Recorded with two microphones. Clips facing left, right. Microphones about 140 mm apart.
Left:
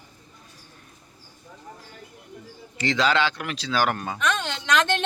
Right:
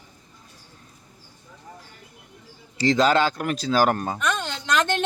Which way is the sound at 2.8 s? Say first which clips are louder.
Right 4 dB; 40° right (ahead or behind).